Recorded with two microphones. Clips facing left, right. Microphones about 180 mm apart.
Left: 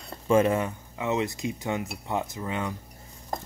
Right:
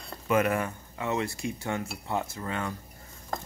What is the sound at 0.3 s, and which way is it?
Speech, 25° left (ahead or behind).